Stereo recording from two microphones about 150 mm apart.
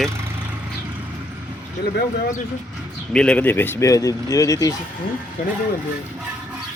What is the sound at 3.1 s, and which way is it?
Speech, 5° left (ahead or behind).